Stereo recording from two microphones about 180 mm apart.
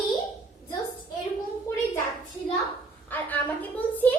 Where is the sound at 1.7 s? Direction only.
15° left (ahead or behind).